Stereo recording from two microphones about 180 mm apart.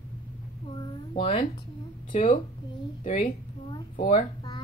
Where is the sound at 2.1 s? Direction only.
45° left (ahead or behind).